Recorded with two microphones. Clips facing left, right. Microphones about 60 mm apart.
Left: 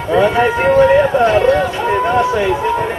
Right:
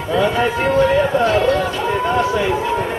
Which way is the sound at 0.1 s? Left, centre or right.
Left.